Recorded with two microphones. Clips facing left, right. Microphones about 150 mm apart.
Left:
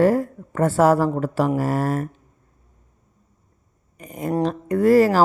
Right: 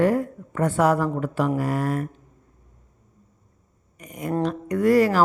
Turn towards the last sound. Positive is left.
turn(degrees=35)  # may be behind; listen again after turning